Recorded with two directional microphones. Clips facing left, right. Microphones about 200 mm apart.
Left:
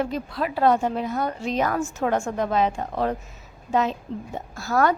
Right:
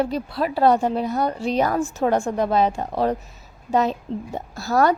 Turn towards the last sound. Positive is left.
turn(degrees=-35)  # may be behind; listen again after turning